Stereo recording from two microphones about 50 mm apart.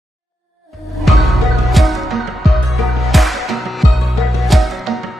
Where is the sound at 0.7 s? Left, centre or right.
Centre.